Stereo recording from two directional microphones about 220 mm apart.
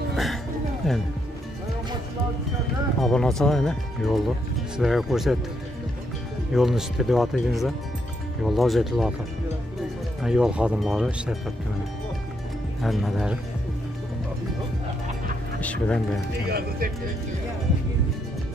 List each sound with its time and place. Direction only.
0.1 s music: centre (ahead or behind)
0.8 s speech: centre (ahead or behind)
3.0 s speech: centre (ahead or behind)
6.5 s speech: centre (ahead or behind)
10.2 s speech: 5° right (ahead or behind)
12.8 s speech: centre (ahead or behind)
15.6 s speech: 5° left (ahead or behind)
16.4 s speech: 45° right (ahead or behind)